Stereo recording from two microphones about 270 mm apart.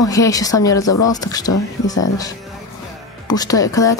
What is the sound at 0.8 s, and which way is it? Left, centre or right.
Speech, left.